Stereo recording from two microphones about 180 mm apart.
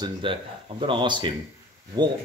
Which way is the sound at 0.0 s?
30° right (ahead or behind).